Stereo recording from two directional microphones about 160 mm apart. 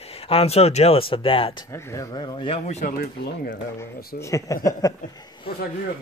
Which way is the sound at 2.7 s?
45° left (ahead or behind).